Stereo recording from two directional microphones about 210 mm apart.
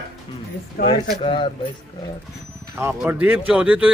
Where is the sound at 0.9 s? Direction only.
25° left (ahead or behind).